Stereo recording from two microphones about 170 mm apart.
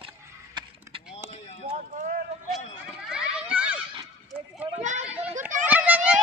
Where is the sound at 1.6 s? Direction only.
40° right (ahead or behind).